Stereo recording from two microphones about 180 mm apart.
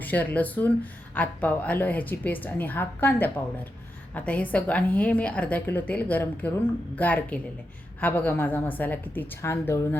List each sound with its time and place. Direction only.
0.0 s a woman's voice: 10° left (ahead or behind)